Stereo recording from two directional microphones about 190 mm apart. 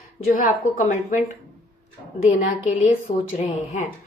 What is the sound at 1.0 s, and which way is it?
A woman's voice, 40° left (ahead or behind).